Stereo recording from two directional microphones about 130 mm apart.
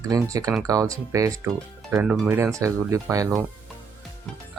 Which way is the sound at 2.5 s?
25° right (ahead or behind).